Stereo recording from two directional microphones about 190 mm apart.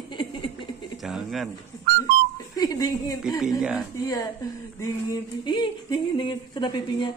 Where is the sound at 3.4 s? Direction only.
Centre (ahead or behind).